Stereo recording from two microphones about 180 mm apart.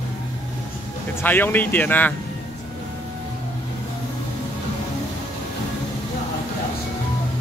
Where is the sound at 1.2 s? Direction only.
10° left (ahead or behind).